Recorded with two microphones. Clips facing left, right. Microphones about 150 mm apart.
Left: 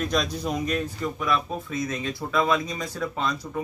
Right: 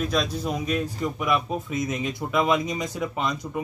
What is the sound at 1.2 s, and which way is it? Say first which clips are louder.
A man's voice: right 2 dB; 15° right (ahead or behind).